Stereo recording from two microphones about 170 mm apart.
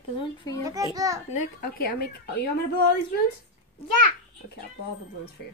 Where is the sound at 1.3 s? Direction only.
55° left (ahead or behind).